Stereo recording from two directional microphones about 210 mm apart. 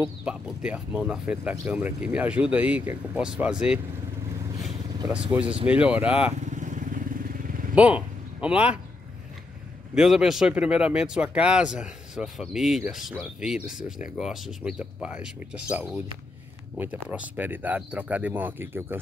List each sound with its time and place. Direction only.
0.0 s speech: 5° right (ahead or behind)
5.1 s speech: 5° right (ahead or behind)
6.4 s vehicle: 35° right (ahead or behind)
7.7 s speech: 5° right (ahead or behind)
9.9 s speech: centre (ahead or behind)
16.7 s speech: 10° right (ahead or behind)